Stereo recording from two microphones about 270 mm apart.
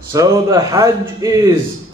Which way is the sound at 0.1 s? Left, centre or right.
Centre.